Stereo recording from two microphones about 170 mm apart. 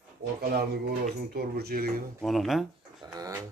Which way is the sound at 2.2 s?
Centre (ahead or behind).